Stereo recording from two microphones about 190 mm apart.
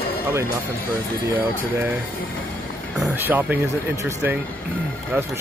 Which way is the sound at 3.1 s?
10° right (ahead or behind).